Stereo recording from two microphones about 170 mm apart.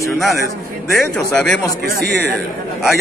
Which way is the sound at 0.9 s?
5° left (ahead or behind).